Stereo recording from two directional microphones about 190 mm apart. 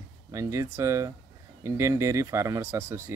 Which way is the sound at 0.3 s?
15° right (ahead or behind).